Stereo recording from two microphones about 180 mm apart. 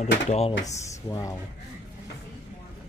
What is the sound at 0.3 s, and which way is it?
Speech, 35° left (ahead or behind).